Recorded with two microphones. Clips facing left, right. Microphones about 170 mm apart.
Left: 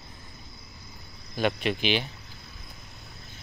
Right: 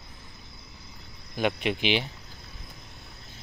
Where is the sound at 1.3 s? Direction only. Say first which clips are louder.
Even; 15° right (ahead or behind).